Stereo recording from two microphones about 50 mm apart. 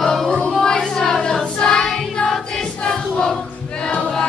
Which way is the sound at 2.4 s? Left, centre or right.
Centre.